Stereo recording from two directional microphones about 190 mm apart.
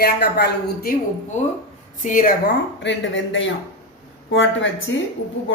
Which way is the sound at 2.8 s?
75° left (ahead or behind).